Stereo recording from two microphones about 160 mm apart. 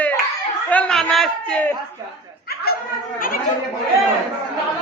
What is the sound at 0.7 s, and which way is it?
A man's voice, 5° left (ahead or behind).